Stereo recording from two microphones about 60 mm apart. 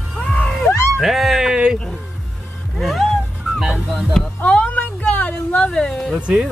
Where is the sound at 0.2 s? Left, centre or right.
Centre.